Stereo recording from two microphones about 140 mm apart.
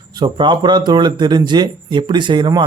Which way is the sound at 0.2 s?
30° right (ahead or behind).